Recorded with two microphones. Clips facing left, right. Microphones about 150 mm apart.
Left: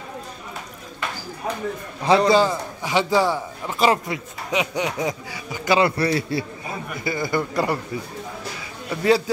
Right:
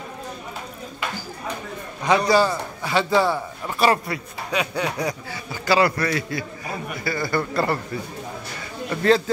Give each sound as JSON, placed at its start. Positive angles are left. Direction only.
{"t": 2.0, "sound": "a man's voice", "side_deg": 25}
{"t": 7.1, "sound": "a man's voice", "side_deg": 15}
{"t": 8.9, "sound": "a man's voice", "side_deg": 10}